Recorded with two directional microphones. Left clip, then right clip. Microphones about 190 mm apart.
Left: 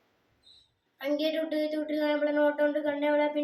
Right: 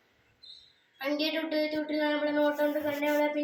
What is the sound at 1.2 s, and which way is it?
Speech, 30° left (ahead or behind).